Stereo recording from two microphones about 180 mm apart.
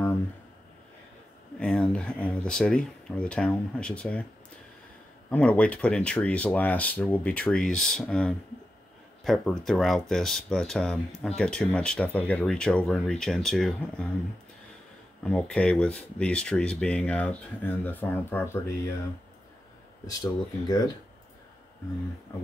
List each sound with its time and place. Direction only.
1.6 s speech: 5° left (ahead or behind)
5.3 s speech: 5° left (ahead or behind)
15.2 s speech: 5° left (ahead or behind)
20.1 s speech: 20° left (ahead or behind)